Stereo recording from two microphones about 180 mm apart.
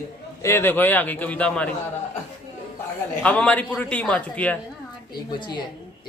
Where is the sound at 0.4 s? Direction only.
15° left (ahead or behind).